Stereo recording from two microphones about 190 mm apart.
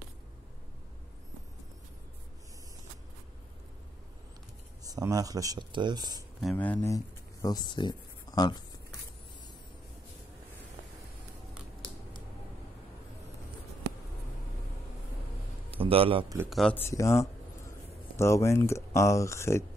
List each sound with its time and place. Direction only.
4.8 s speech: 20° right (ahead or behind)
6.5 s speech: 10° left (ahead or behind)
7.4 s speech: 20° left (ahead or behind)
15.7 s a man's voice: 30° right (ahead or behind)
16.4 s speech: 5° left (ahead or behind)